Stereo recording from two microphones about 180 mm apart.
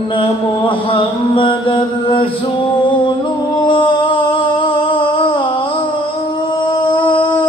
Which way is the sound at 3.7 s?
30° left (ahead or behind).